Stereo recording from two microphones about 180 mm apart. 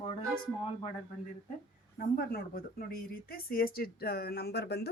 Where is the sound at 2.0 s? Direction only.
55° left (ahead or behind).